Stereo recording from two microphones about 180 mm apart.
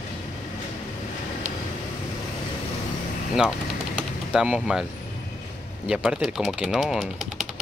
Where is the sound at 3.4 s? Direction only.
5° right (ahead or behind).